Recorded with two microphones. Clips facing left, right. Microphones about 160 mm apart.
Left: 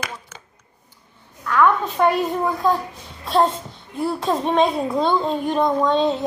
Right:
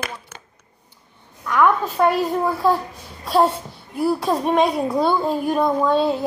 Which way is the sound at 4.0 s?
5° right (ahead or behind).